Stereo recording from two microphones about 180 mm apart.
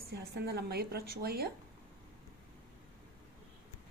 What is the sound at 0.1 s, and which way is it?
A woman's voice, 65° right (ahead or behind).